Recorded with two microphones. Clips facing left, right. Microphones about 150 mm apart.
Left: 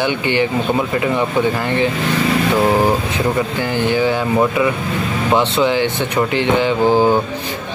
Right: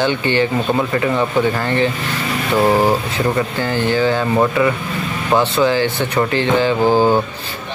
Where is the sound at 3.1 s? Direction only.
15° left (ahead or behind).